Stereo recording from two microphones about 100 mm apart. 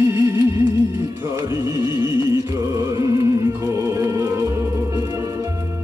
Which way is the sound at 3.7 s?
30° right (ahead or behind).